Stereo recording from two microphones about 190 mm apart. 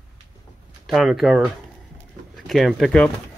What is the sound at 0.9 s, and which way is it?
Speech, centre (ahead or behind).